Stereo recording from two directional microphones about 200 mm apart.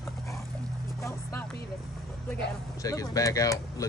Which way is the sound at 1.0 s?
15° left (ahead or behind).